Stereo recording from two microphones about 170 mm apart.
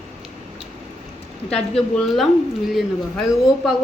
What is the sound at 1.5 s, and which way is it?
A woman's voice, 5° left (ahead or behind).